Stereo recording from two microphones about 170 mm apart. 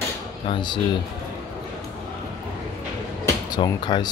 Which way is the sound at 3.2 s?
25° left (ahead or behind).